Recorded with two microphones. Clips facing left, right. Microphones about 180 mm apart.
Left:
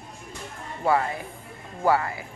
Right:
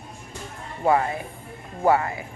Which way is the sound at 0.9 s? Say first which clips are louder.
Right 2 dB; 25° right (ahead or behind).